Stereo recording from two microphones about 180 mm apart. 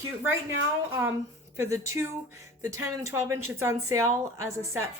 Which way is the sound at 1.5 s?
15° right (ahead or behind).